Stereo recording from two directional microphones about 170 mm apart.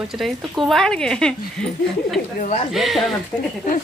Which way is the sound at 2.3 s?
45° left (ahead or behind).